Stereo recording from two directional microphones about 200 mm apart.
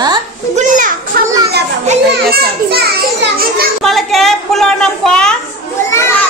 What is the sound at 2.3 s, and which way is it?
A child's voice, 50° right (ahead or behind).